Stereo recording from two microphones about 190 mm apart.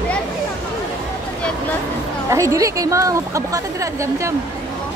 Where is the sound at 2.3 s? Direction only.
15° right (ahead or behind).